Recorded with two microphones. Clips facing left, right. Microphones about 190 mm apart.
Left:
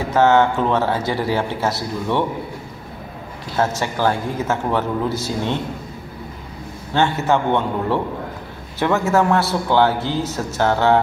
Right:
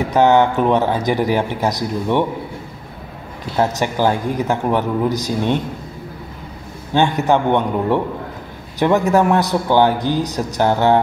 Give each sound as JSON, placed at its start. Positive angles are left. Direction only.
{"t": 0.1, "sound": "a man's voice", "side_deg": -15}
{"t": 3.5, "sound": "a man's voice", "side_deg": -15}
{"t": 6.9, "sound": "a man's voice", "side_deg": -15}